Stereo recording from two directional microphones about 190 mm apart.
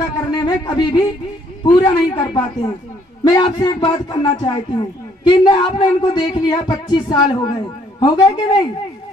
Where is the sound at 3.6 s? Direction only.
20° left (ahead or behind).